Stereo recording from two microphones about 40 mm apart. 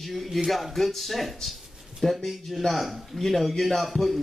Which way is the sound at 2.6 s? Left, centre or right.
Centre.